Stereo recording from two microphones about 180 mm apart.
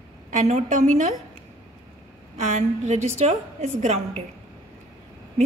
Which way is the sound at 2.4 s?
40° right (ahead or behind).